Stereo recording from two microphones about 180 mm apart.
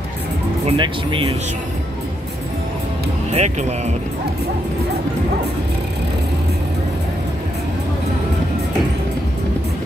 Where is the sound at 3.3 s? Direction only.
40° right (ahead or behind).